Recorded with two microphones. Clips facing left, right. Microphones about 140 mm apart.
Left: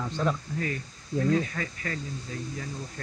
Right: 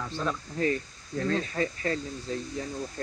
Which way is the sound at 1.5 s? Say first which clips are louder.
Right 6 dB; 30° right (ahead or behind).